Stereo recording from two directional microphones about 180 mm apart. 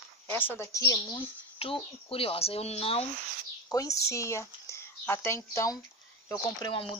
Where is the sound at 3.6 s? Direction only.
20° left (ahead or behind).